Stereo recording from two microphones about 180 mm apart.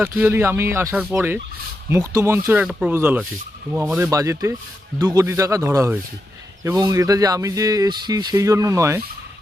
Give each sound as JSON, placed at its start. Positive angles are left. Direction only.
{"t": 0.0, "sound": "speech", "side_deg": -10}
{"t": 2.6, "sound": "speech", "side_deg": 0}